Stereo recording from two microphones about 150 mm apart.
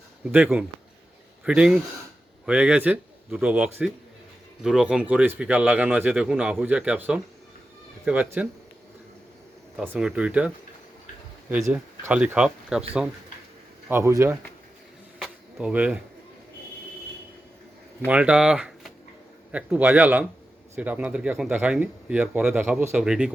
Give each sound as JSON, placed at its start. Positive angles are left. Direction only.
{"t": 0.3, "sound": "speech", "side_deg": -10}
{"t": 9.8, "sound": "speech", "side_deg": -10}
{"t": 11.7, "sound": "speech", "side_deg": -10}
{"t": 13.9, "sound": "speech", "side_deg": -20}
{"t": 15.2, "sound": "a sound", "side_deg": -5}
{"t": 18.1, "sound": "speech", "side_deg": -10}